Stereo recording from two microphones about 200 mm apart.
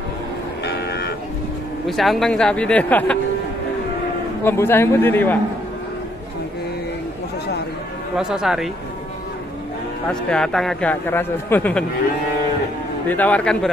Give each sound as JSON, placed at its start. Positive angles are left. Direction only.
{"t": 0.7, "sound": "livestock", "side_deg": 55}
{"t": 1.9, "sound": "speech", "side_deg": 0}
{"t": 4.5, "sound": "a man's voice", "side_deg": 10}
{"t": 8.2, "sound": "speech", "side_deg": 0}
{"t": 10.0, "sound": "speech", "side_deg": 5}
{"t": 13.1, "sound": "a man's voice", "side_deg": 5}